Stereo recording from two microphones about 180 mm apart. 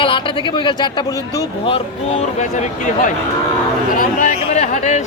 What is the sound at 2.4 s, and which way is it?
Speech, 45° left (ahead or behind).